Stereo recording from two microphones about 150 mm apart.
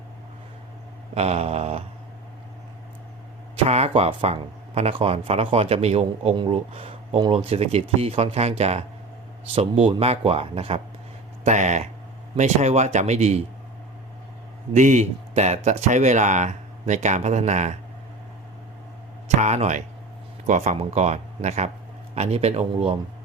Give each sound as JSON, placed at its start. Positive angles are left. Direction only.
{"t": 1.1, "sound": "speech", "side_deg": -45}
{"t": 3.5, "sound": "speech", "side_deg": -45}
{"t": 11.4, "sound": "speech", "side_deg": -50}
{"t": 14.7, "sound": "speech", "side_deg": -55}
{"t": 19.4, "sound": "speech", "side_deg": -50}